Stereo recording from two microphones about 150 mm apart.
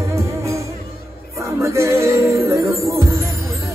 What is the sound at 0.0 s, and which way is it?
Music, 20° right (ahead or behind).